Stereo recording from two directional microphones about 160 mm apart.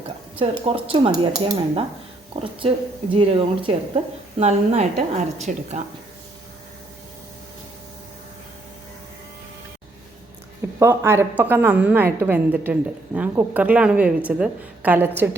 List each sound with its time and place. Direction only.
0.6 s a woman's voice: 35° right (ahead or behind); by 5.6 s 55° right (ahead or behind)
10.8 s a woman's voice: 15° right (ahead or behind)